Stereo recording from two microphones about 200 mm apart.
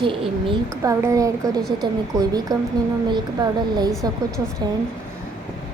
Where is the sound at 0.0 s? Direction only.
25° right (ahead or behind).